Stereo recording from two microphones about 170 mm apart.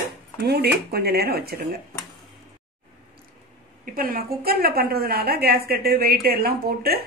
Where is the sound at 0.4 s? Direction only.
70° right (ahead or behind).